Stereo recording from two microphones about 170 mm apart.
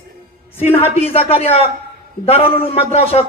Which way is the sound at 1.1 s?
35° left (ahead or behind).